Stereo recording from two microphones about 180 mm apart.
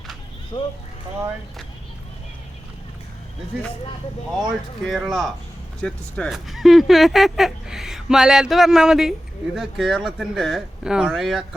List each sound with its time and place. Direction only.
0.5 s speech: 30° left (ahead or behind)
4.4 s speech: centre (ahead or behind)